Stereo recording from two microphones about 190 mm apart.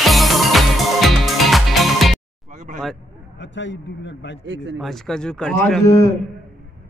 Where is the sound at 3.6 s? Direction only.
70° left (ahead or behind).